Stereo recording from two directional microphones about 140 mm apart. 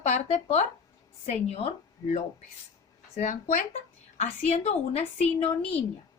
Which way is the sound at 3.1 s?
60° left (ahead or behind).